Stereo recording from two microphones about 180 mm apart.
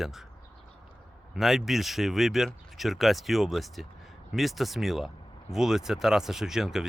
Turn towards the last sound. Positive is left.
turn(degrees=-5)  # may be behind; listen again after turning